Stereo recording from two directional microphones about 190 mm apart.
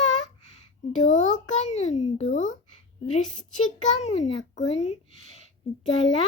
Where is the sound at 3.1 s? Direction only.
40° left (ahead or behind).